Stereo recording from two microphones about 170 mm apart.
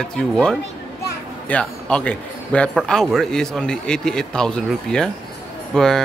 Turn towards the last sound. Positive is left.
turn(degrees=5)  # may be behind; listen again after turning